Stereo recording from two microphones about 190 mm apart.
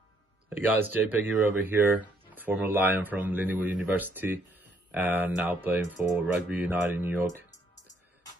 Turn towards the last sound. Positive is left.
turn(degrees=-10)  # may be behind; listen again after turning